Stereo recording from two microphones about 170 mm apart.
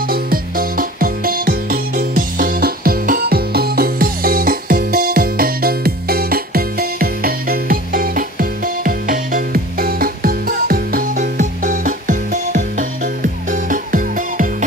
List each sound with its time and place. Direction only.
0.1 s music: 60° right (ahead or behind)